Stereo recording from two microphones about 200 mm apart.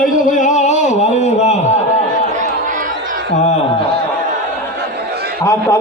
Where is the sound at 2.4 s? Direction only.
40° right (ahead or behind).